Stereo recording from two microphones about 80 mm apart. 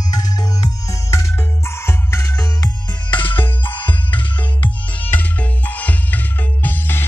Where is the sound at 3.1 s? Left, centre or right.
Left.